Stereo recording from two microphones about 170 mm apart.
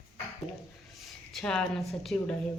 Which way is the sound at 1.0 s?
Centre (ahead or behind).